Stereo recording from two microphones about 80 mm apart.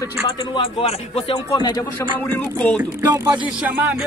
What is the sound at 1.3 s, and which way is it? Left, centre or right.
Speech, left.